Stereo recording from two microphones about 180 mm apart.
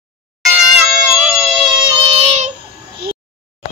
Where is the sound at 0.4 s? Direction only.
Centre (ahead or behind).